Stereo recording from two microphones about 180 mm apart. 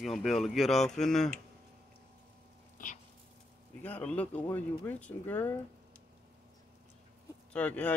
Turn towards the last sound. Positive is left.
turn(degrees=5)  # may be behind; listen again after turning